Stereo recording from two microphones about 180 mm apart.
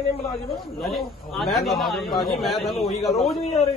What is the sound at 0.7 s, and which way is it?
A man's voice, centre (ahead or behind).